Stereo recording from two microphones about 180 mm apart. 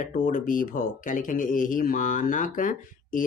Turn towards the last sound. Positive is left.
turn(degrees=45)  # may be behind; listen again after turning